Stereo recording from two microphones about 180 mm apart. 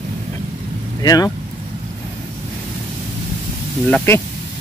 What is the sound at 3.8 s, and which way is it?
Speech, 10° left (ahead or behind).